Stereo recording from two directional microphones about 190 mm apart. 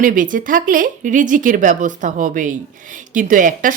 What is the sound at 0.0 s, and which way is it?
Speech, 45° right (ahead or behind).